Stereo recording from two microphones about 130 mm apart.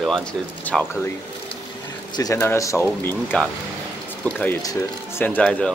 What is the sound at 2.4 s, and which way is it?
Speech, 20° left (ahead or behind).